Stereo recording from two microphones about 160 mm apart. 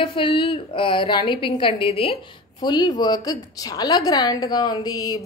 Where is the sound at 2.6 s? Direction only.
25° left (ahead or behind).